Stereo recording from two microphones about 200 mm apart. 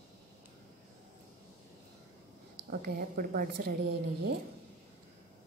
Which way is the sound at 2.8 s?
45° right (ahead or behind).